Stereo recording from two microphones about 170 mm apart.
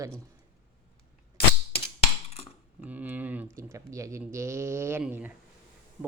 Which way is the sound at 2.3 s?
35° left (ahead or behind).